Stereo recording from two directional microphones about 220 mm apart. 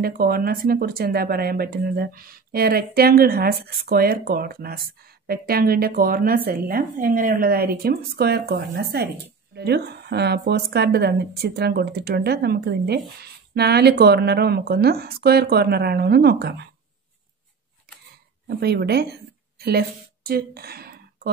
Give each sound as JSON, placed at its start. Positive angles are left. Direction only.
{"t": 0.0, "sound": "speech", "side_deg": -40}
{"t": 18.5, "sound": "speech", "side_deg": -45}